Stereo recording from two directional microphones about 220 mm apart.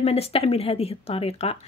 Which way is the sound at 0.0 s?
25° left (ahead or behind).